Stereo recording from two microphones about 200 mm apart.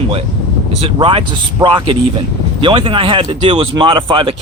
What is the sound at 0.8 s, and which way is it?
Speech, 25° right (ahead or behind).